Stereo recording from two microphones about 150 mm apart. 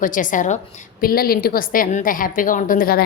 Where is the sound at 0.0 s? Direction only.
60° left (ahead or behind).